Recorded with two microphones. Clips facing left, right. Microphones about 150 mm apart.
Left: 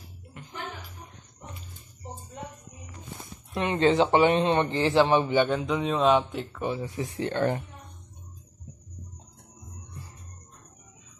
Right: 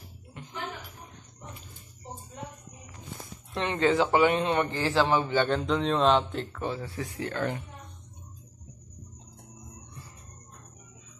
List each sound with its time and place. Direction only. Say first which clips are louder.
3.5 s a man's voice: left 3 dB; 20° left (ahead or behind)